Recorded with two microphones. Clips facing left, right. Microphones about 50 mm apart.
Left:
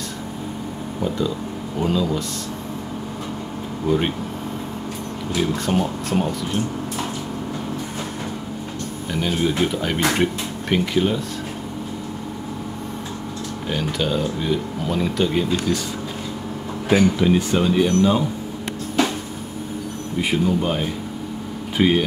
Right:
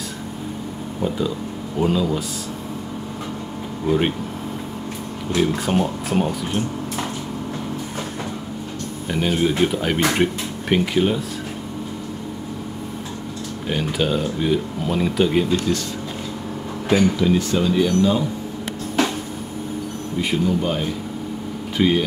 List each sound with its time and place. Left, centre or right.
1.0 s speech: centre
3.8 s speech: centre
5.4 s speech: centre
9.1 s speech: centre
13.7 s speech: centre
16.9 s speech: centre
20.2 s speech: centre